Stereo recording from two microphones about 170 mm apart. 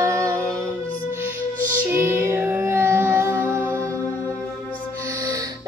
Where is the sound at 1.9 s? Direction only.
15° right (ahead or behind).